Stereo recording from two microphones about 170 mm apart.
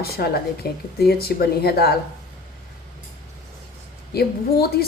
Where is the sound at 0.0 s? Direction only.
65° left (ahead or behind).